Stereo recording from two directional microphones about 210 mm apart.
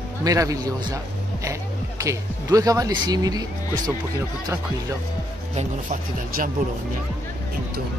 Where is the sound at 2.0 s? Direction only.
15° right (ahead or behind).